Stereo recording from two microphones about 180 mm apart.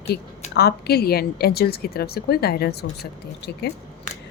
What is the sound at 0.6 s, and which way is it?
A woman's voice, 60° left (ahead or behind).